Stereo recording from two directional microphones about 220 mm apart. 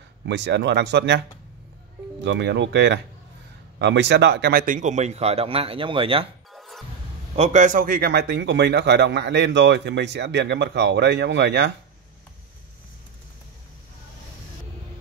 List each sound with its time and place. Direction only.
0.3 s speech: 50° right (ahead or behind)
2.2 s a man's voice: 55° right (ahead or behind); by 6.2 s 25° right (ahead or behind)
6.5 s music: centre (ahead or behind)
7.3 s speech: 30° right (ahead or behind); by 11.7 s 50° right (ahead or behind)